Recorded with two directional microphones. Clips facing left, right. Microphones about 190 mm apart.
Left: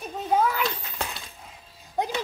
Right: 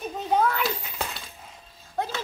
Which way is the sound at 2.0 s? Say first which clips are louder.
Left 2 dB; 15° left (ahead or behind).